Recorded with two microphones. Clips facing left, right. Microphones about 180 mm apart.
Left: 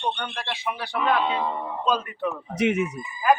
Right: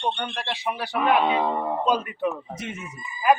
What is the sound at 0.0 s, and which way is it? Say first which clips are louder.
Speech: right 1 dB; 30° right (ahead or behind).